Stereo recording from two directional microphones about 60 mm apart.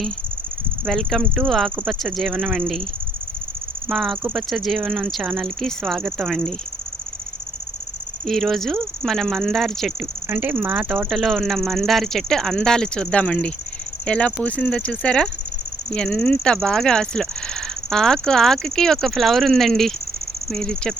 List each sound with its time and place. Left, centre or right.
0.9 s speech: centre
3.8 s speech: centre
8.3 s speech: centre
10.2 s speech: right
10.8 s speech: centre